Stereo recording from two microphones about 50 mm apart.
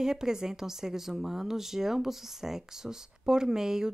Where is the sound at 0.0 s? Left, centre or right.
Centre.